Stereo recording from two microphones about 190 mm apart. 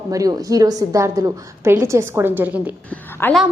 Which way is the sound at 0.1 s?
20° right (ahead or behind).